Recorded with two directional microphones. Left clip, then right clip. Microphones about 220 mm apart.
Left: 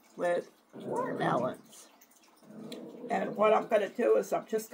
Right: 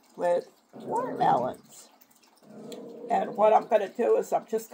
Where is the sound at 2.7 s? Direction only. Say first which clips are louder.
Right 6 dB; 5° right (ahead or behind).